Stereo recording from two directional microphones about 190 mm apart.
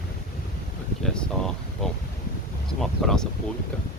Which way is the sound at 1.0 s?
5° left (ahead or behind).